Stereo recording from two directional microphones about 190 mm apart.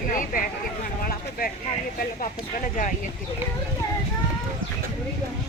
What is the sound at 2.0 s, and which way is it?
Speech, 45° left (ahead or behind).